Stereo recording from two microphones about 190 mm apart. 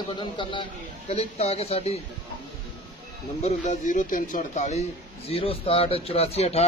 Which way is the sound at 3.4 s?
40° left (ahead or behind).